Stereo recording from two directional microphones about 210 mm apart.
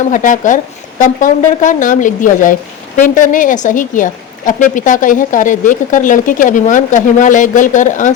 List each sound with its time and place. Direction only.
0.1 s a woman's voice: 40° left (ahead or behind)